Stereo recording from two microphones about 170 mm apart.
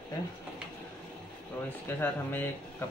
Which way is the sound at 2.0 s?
10° left (ahead or behind).